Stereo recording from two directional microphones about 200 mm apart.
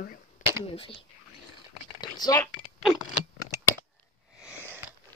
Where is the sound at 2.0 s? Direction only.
20° left (ahead or behind).